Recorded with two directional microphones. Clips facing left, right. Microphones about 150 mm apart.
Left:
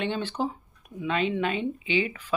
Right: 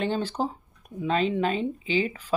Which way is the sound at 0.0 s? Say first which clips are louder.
Right 2 dB; 40° right (ahead or behind).